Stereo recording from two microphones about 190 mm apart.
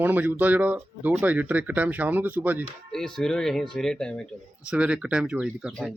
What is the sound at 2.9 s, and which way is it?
Speech, 5° left (ahead or behind).